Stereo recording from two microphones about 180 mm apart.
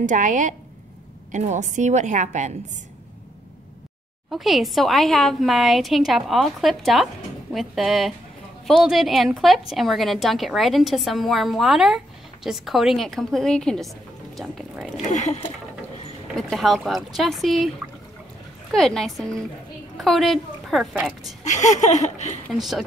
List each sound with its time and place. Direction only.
0.0 s a woman's voice: 45° right (ahead or behind)
4.3 s a woman's voice: centre (ahead or behind)
15.0 s a sound: 40° left (ahead or behind)
16.3 s a woman's voice: centre (ahead or behind)
18.7 s a woman's voice: centre (ahead or behind)
21.5 s a sound: 40° left (ahead or behind)
22.5 s a woman's voice: centre (ahead or behind)